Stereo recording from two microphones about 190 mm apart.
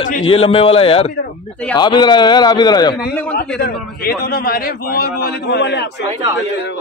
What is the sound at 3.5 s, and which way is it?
A man's voice, 50° left (ahead or behind).